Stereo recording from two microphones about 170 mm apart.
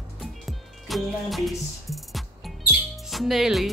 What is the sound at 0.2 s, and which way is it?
Music, centre (ahead or behind).